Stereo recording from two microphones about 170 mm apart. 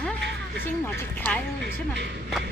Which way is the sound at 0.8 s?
10° left (ahead or behind).